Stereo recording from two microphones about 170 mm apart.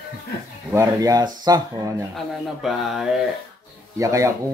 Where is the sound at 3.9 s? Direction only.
20° right (ahead or behind).